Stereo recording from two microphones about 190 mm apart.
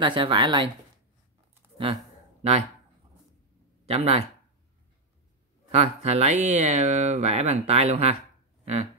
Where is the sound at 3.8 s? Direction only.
35° right (ahead or behind).